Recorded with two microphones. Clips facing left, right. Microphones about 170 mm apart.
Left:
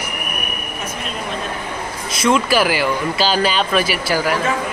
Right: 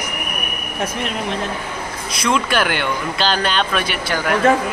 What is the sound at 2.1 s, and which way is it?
Speech, centre (ahead or behind).